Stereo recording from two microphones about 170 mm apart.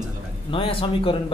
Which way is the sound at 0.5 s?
30° left (ahead or behind).